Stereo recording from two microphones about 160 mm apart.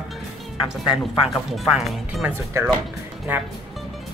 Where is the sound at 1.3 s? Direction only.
Centre (ahead or behind).